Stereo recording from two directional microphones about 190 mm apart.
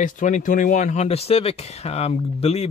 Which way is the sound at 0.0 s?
45° left (ahead or behind).